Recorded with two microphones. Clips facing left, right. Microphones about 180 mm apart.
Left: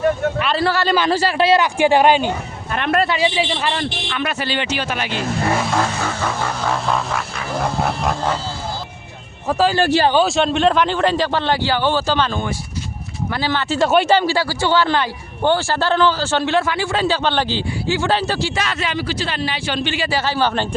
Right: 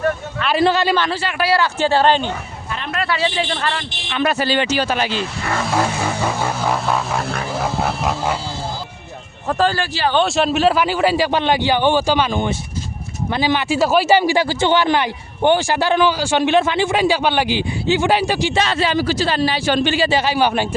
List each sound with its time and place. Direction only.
0.5 s a man's voice: 20° right (ahead or behind)
1.1 s speech: 40° left (ahead or behind)
1.4 s speech: 20° left (ahead or behind)
2.7 s a sound: 60° left (ahead or behind)
3.1 s speech: 15° left (ahead or behind)
4.2 s a man's voice: 40° right (ahead or behind)
5.7 s speech: 10° right (ahead or behind)
7.5 s a sound: centre (ahead or behind)
9.5 s a sound: 5° left (ahead or behind)
9.8 s speech: 50° left (ahead or behind)
10.2 s speech: centre (ahead or behind)
13.8 s speech: centre (ahead or behind); by 18.6 s 20° right (ahead or behind)
18.6 s a man's voice: 30° right (ahead or behind)
20.1 s speech: 15° right (ahead or behind)